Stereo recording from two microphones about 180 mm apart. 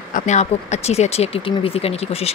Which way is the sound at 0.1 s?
40° left (ahead or behind).